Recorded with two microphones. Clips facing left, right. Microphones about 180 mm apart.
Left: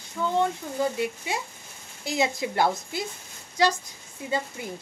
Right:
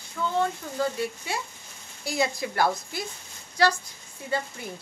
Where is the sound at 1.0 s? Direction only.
20° left (ahead or behind).